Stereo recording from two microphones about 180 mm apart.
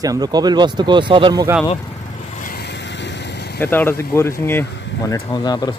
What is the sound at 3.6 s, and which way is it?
Speech, 10° left (ahead or behind).